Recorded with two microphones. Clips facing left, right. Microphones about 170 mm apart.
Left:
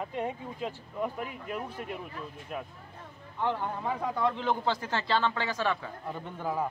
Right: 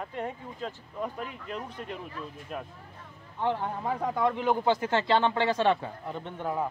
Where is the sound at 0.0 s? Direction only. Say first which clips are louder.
Left 2 dB; 15° left (ahead or behind).